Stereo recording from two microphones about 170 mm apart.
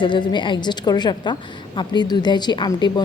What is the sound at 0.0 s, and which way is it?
A woman's voice, 25° left (ahead or behind).